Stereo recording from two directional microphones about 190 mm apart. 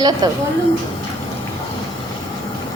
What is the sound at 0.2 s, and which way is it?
Speech, 20° right (ahead or behind).